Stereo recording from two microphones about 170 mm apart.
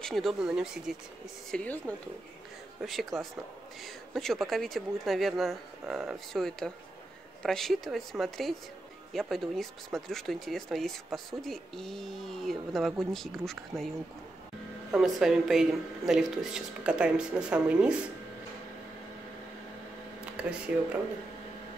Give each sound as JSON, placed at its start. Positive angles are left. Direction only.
{"t": 0.0, "sound": "speech", "side_deg": 0}
{"t": 1.5, "sound": "speech", "side_deg": 10}
{"t": 20.3, "sound": "speech", "side_deg": -5}